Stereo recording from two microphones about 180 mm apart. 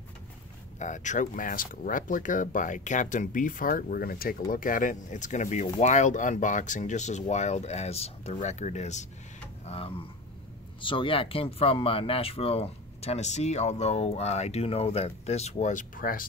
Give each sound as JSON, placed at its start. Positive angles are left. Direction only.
{"t": 0.7, "sound": "speech", "side_deg": 45}